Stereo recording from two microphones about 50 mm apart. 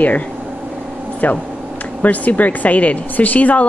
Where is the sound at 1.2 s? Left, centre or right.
Left.